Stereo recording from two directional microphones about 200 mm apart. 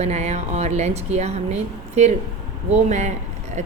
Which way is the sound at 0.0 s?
35° right (ahead or behind).